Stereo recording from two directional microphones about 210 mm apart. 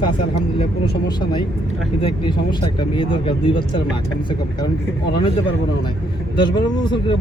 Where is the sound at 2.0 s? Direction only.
25° left (ahead or behind).